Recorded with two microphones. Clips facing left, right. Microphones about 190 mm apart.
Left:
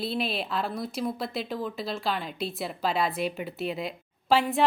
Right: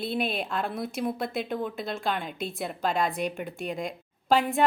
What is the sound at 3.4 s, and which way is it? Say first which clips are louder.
Speech: left 1 dB; 45° right (ahead or behind).